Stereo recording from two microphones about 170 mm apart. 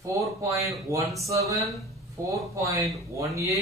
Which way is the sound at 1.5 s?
Centre (ahead or behind).